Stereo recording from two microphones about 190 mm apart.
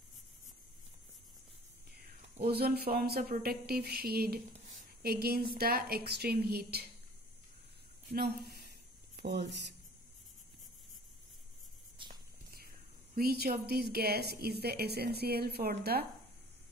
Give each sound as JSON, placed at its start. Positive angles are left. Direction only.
{"t": 2.4, "sound": "speech", "side_deg": -55}
{"t": 8.1, "sound": "a sound", "side_deg": -55}
{"t": 9.5, "sound": "speech", "side_deg": -65}
{"t": 13.1, "sound": "speech", "side_deg": -55}